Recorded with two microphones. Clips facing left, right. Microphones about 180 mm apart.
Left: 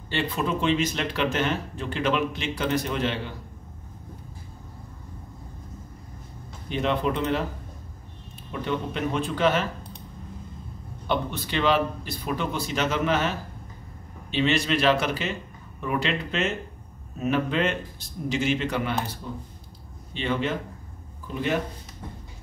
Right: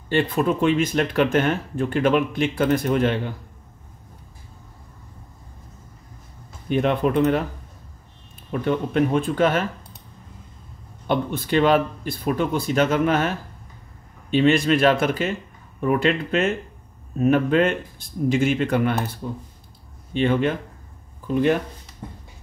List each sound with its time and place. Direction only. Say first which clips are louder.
0.1 s speech: right 6 dB; 50° right (ahead or behind)
6.7 s speech: right 5 dB; 50° right (ahead or behind)
8.5 s speech: right 6 dB; 50° right (ahead or behind)
11.1 s speech: right 5 dB; 50° right (ahead or behind)
14.3 s speech: right 6 dB; 50° right (ahead or behind)
20.2 s speech: right 7 dB; 50° right (ahead or behind)